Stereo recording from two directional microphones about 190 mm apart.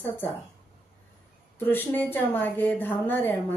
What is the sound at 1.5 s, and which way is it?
A woman's voice, 10° left (ahead or behind).